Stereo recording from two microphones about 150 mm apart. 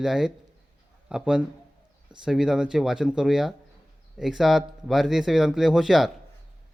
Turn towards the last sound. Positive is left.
turn(degrees=0)  # may be behind; listen again after turning